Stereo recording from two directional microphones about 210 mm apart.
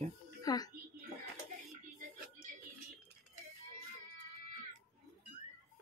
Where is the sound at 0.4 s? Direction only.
15° left (ahead or behind).